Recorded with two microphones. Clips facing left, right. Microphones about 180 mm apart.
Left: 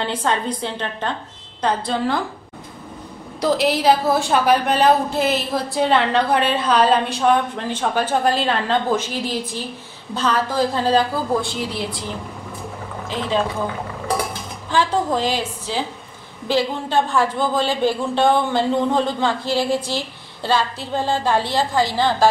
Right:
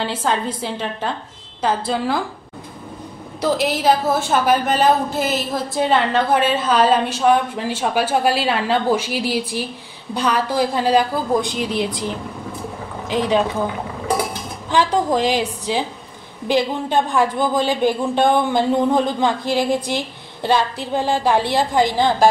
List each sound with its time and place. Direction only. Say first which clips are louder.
0.0 s a woman's voice: right 1 dB; 5° right (ahead or behind)
3.3 s a woman's voice: left 1 dB; centre (ahead or behind); by 12.1 s 20° right (ahead or behind)
13.1 s a woman's voice: right 4 dB; 15° right (ahead or behind)
14.7 s a woman's voice: right 2 dB; 15° right (ahead or behind)